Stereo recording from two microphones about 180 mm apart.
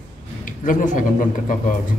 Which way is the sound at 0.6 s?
45° left (ahead or behind).